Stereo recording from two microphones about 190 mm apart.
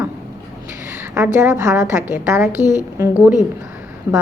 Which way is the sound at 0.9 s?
10° right (ahead or behind).